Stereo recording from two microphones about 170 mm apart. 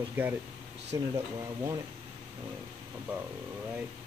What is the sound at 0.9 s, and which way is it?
Speech, 25° right (ahead or behind).